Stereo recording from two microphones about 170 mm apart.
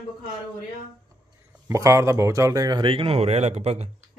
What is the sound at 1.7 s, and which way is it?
Speech, 15° right (ahead or behind).